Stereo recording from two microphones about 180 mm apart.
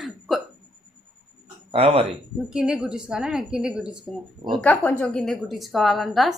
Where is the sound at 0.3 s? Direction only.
Centre (ahead or behind).